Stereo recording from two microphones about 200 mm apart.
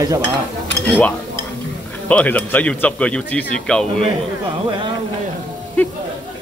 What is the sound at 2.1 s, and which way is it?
Speech, 10° left (ahead or behind).